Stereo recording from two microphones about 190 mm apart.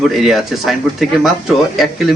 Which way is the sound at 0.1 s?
Centre (ahead or behind).